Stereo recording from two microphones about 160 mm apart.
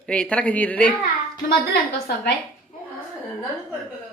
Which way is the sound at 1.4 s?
75° left (ahead or behind).